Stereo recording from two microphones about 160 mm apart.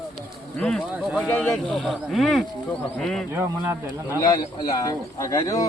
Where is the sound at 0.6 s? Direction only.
5° left (ahead or behind).